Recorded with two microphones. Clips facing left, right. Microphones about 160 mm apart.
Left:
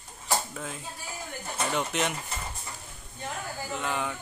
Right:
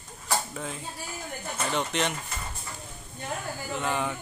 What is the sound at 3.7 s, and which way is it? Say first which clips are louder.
Speech: right 3 dB; centre (ahead or behind).